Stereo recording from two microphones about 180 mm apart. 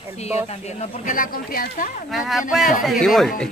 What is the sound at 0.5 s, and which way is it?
Speech, 35° left (ahead or behind).